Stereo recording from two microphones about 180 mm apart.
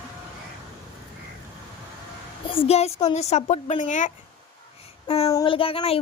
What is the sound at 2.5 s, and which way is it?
Speech, 35° left (ahead or behind).